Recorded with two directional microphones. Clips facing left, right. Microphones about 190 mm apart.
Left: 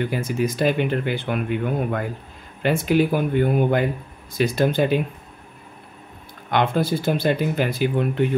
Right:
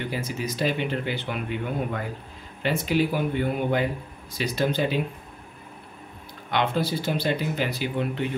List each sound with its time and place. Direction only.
0.1 s speech: 50° left (ahead or behind)
6.5 s speech: 50° left (ahead or behind)